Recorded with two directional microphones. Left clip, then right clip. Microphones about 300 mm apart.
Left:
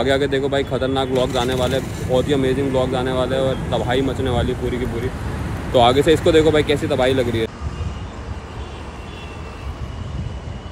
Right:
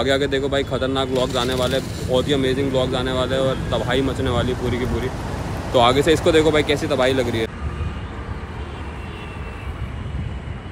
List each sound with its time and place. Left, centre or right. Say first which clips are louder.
0.0 s speech: left 1 dB; centre
5.7 s speech: left 2 dB; centre